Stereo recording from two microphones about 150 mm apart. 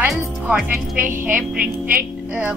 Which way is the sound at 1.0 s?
65° right (ahead or behind).